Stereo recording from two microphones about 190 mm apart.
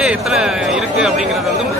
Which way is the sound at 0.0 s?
5° right (ahead or behind).